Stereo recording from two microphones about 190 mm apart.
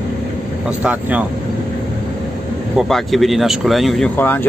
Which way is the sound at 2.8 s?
Centre (ahead or behind).